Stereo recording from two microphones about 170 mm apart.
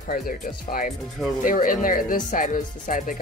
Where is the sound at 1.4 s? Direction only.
55° left (ahead or behind).